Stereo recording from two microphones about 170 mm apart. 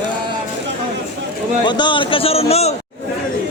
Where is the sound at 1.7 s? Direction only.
25° left (ahead or behind).